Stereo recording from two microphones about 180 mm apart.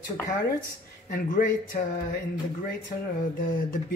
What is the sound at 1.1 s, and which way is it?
Speech, 45° left (ahead or behind).